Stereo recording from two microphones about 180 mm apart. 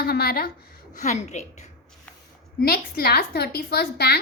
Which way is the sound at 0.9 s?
45° left (ahead or behind).